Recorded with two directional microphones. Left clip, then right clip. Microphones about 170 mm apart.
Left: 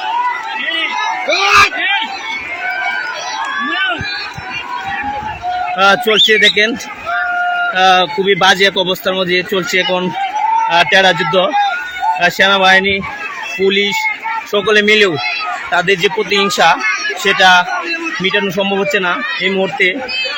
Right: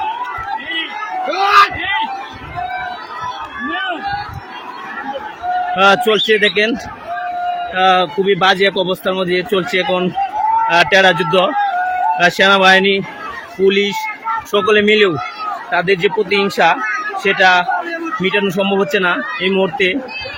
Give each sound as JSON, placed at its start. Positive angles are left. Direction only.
{"t": 1.3, "sound": "a sound", "side_deg": -45}
{"t": 5.7, "sound": "speech", "side_deg": -20}
{"t": 7.8, "sound": "speech", "side_deg": -5}